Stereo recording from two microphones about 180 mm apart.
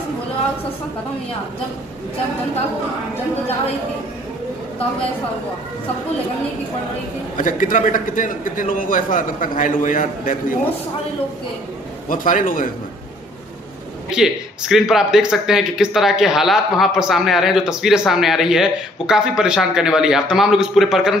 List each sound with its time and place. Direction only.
7.3 s a man's voice: 45° left (ahead or behind)
12.1 s a man's voice: 50° left (ahead or behind)
14.1 s speech: 5° right (ahead or behind)